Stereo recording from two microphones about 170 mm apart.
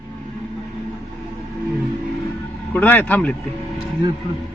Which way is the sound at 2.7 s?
10° left (ahead or behind).